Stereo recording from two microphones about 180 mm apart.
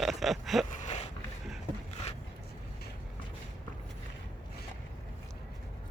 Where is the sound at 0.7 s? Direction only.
40° left (ahead or behind).